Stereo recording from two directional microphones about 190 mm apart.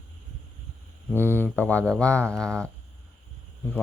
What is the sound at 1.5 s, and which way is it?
Speech, 10° left (ahead or behind).